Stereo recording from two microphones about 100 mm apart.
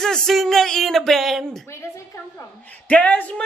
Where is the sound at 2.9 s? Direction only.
15° left (ahead or behind).